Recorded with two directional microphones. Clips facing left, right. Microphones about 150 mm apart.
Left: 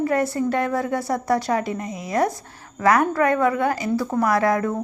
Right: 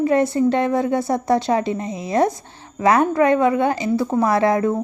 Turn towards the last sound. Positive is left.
turn(degrees=-25)  # may be behind; listen again after turning